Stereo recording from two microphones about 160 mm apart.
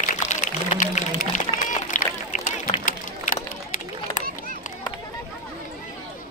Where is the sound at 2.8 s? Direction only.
60° left (ahead or behind).